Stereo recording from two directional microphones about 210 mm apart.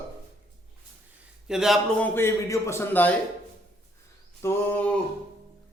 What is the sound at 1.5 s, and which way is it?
Speech, centre (ahead or behind).